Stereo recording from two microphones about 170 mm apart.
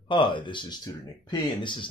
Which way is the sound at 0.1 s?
30° left (ahead or behind).